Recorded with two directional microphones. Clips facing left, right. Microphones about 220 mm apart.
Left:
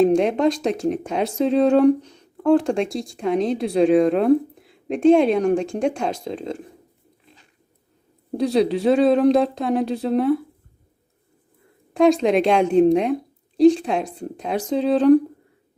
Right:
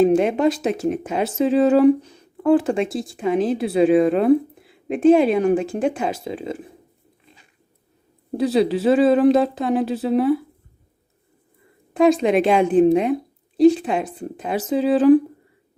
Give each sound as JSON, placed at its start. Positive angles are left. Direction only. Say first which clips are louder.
{"t": 0.0, "sound": "speech", "louder": "right 1 dB", "side_deg": -5}
{"t": 8.3, "sound": "speech", "louder": "right 1 dB", "side_deg": 0}
{"t": 11.9, "sound": "speech", "louder": "even", "side_deg": 0}